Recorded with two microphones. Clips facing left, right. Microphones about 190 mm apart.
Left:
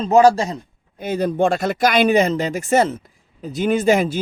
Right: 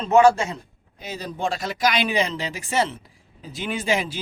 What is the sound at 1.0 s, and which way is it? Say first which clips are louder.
Speech: left 10 dB; 55° left (ahead or behind).